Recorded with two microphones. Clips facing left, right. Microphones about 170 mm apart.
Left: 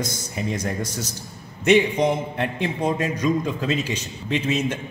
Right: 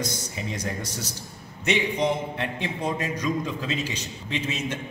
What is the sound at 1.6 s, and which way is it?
A man's voice, 50° left (ahead or behind).